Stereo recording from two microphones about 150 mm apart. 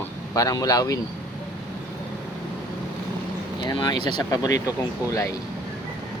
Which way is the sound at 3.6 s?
30° left (ahead or behind).